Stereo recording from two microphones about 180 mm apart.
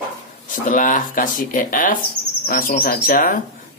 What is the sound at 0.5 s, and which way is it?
Speech, 50° left (ahead or behind).